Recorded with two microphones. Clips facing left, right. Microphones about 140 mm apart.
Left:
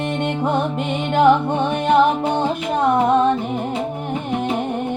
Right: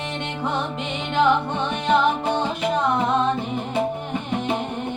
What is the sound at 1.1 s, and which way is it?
Music, 50° left (ahead or behind).